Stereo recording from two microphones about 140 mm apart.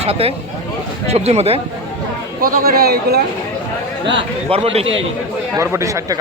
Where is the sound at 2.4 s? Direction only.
90° right.